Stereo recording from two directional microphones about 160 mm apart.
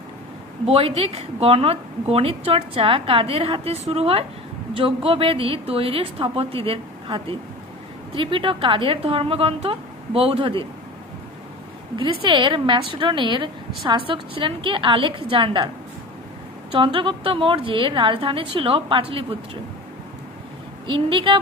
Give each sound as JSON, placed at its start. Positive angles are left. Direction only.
{"t": 0.7, "sound": "a woman's voice", "side_deg": -35}
{"t": 12.2, "sound": "a woman's voice", "side_deg": -30}
{"t": 16.7, "sound": "a woman's voice", "side_deg": -30}
{"t": 20.8, "sound": "a woman's voice", "side_deg": -30}